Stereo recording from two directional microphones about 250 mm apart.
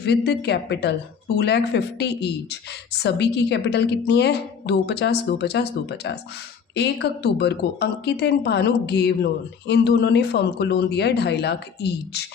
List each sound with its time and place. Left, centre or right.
0.0 s a woman's voice: left